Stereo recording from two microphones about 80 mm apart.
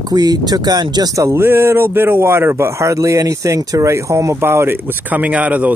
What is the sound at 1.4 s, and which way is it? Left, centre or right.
Speech, right.